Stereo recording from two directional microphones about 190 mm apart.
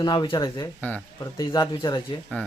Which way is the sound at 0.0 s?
25° left (ahead or behind).